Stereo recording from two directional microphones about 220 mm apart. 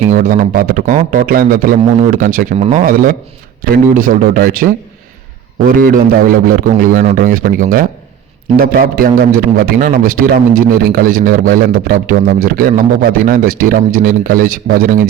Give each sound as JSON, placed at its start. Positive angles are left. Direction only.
{"t": 0.1, "sound": "a man's voice", "side_deg": -40}